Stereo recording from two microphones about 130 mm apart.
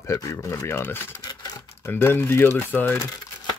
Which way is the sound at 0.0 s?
20° left (ahead or behind).